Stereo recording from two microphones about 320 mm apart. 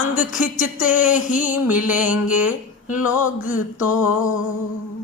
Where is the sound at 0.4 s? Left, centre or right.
Left.